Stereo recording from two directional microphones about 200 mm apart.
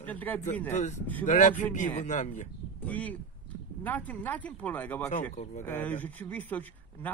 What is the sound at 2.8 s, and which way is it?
Speech, 5° left (ahead or behind).